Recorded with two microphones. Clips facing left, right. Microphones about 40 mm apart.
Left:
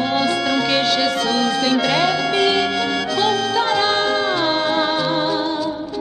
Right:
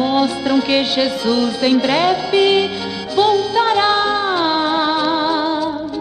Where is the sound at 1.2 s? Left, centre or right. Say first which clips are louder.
Right 2 dB; left.